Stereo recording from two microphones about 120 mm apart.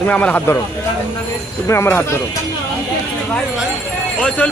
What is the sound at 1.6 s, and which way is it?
Speech, 20° left (ahead or behind).